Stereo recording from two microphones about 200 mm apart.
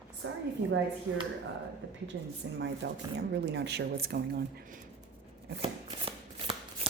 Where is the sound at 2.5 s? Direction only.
60° right (ahead or behind).